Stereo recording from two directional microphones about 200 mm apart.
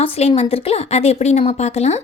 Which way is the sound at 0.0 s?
30° left (ahead or behind).